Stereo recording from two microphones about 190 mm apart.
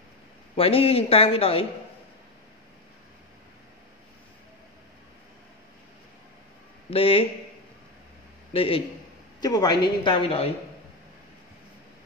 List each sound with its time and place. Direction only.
0.6 s speech: 30° left (ahead or behind)
6.9 s a woman's voice: 30° left (ahead or behind)
8.5 s a woman's voice: 30° left (ahead or behind)